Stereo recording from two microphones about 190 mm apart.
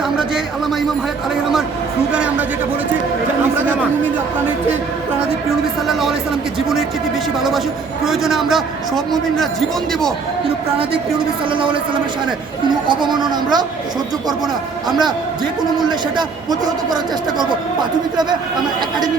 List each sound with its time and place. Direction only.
5.9 s speech: centre (ahead or behind)
8.0 s speech: centre (ahead or behind)
11.5 s a man's voice: 25° right (ahead or behind)
12.9 s a man's voice: 25° right (ahead or behind)
15.9 s a man's voice: 20° right (ahead or behind)